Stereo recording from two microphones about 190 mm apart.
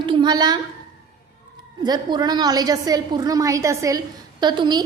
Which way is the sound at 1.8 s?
20° right (ahead or behind).